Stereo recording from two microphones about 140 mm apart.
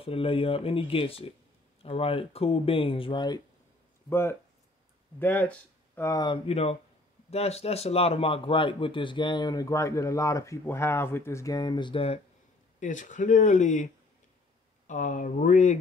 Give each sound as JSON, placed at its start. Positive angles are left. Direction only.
{"t": 0.0, "sound": "a man's voice", "side_deg": 40}
{"t": 4.1, "sound": "speech", "side_deg": 15}
{"t": 6.1, "sound": "a man's voice", "side_deg": 35}
{"t": 12.8, "sound": "speech", "side_deg": 65}
{"t": 14.9, "sound": "speech", "side_deg": 65}